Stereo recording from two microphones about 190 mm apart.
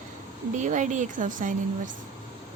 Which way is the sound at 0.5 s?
40° right (ahead or behind).